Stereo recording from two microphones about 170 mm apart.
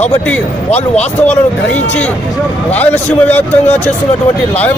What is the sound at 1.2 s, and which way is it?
A man's voice, 5° left (ahead or behind).